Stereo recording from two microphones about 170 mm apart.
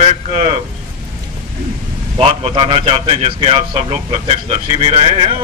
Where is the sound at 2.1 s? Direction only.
30° right (ahead or behind).